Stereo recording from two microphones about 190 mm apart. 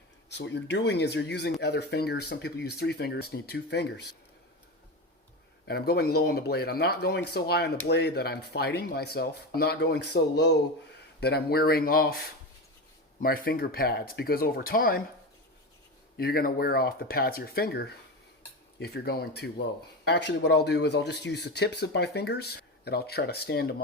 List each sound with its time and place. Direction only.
0.3 s speech: 65° left (ahead or behind)
5.6 s speech: 55° left (ahead or behind)
16.1 s speech: 50° left (ahead or behind)